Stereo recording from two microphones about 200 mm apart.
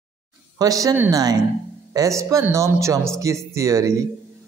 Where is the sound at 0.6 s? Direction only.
15° right (ahead or behind).